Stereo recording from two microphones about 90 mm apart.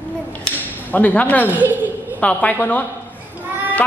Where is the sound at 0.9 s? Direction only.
20° left (ahead or behind).